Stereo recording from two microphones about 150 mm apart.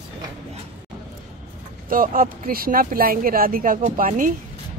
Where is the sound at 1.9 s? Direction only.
65° right (ahead or behind).